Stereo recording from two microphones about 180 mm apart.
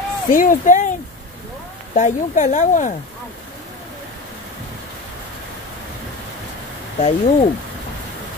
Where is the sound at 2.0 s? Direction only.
45° left (ahead or behind).